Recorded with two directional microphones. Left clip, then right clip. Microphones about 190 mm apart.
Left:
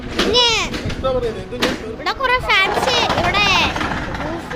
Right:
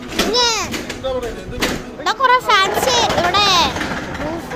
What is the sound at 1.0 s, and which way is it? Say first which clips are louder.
Speech: left 3 dB; 25° left (ahead or behind).